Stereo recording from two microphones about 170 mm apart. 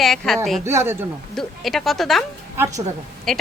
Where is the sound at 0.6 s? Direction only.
15° right (ahead or behind).